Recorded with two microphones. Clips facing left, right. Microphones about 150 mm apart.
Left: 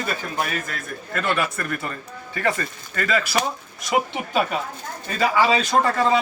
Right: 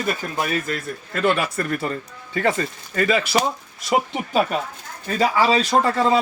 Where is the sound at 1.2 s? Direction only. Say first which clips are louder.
Right 4 dB; 25° right (ahead or behind).